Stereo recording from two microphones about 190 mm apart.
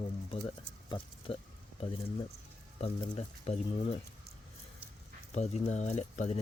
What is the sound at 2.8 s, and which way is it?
Speech, 35° left (ahead or behind).